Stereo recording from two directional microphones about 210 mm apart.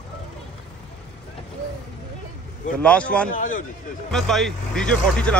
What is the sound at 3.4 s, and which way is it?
Speech, 40° left (ahead or behind).